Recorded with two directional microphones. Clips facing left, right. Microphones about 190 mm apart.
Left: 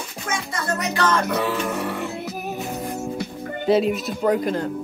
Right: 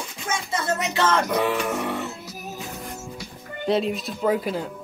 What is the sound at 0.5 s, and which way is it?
Music, 20° right (ahead or behind).